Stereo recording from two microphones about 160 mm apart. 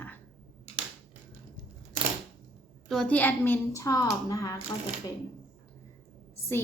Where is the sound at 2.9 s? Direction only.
5° left (ahead or behind).